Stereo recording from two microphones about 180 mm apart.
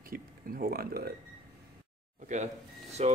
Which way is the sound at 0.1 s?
55° right (ahead or behind).